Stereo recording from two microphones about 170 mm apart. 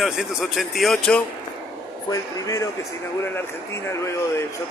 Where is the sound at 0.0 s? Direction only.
Centre (ahead or behind).